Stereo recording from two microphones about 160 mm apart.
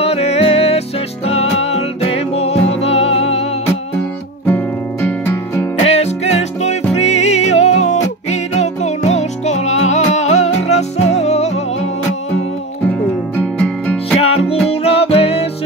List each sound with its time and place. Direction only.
0.0 s music: 40° left (ahead or behind)
4.5 s music: 10° left (ahead or behind)
5.9 s music: 40° left (ahead or behind)
13.4 s music: 10° left (ahead or behind)
14.2 s music: 40° left (ahead or behind)